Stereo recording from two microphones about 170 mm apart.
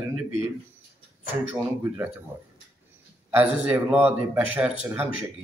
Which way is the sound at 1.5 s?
10° right (ahead or behind).